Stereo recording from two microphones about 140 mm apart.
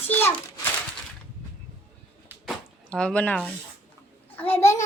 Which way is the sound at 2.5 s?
5° left (ahead or behind).